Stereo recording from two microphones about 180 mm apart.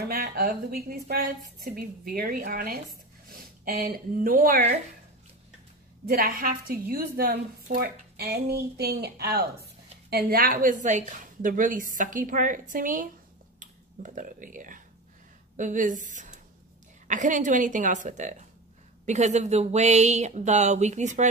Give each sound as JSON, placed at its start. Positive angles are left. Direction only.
{"t": 0.0, "sound": "a woman's voice", "side_deg": -55}
{"t": 6.0, "sound": "a woman's voice", "side_deg": -55}